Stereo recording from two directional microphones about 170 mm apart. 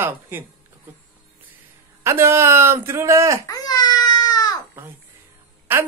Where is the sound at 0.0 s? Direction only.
10° right (ahead or behind).